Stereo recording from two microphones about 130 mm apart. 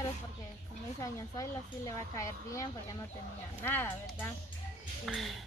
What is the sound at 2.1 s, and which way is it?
Speech, 25° left (ahead or behind).